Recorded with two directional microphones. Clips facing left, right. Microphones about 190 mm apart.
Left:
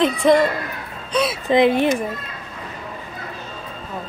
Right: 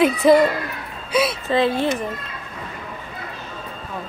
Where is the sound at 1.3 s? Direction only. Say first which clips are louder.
Left 4 dB; 15° left (ahead or behind).